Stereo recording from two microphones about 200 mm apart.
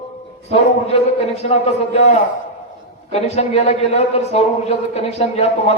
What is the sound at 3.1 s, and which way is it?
A man's voice, 30° left (ahead or behind).